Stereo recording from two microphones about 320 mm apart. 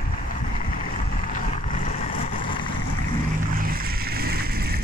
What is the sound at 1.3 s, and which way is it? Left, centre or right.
Vehicle, left.